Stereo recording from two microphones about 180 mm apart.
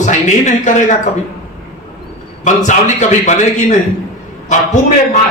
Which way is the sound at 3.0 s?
40° left (ahead or behind).